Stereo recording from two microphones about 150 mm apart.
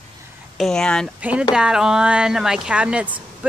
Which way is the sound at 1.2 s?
5° right (ahead or behind).